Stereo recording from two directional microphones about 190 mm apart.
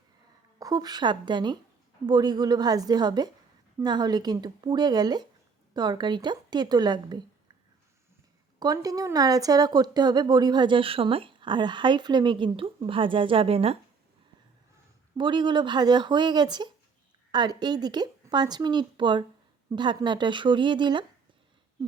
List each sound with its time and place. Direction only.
0.6 s speech: 20° right (ahead or behind)
8.5 s speech: 20° right (ahead or behind)
15.2 s speech: 25° right (ahead or behind)